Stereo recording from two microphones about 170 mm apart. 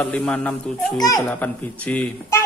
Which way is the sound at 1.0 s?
20° left (ahead or behind).